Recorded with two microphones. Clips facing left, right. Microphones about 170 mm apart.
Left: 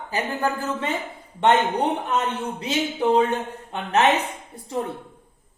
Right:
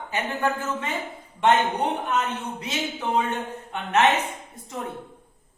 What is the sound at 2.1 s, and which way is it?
Speech, 30° left (ahead or behind).